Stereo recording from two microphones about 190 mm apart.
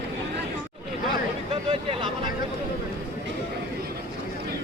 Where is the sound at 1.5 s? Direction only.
30° right (ahead or behind).